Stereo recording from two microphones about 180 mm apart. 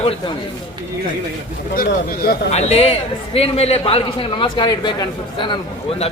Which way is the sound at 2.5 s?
35° left (ahead or behind).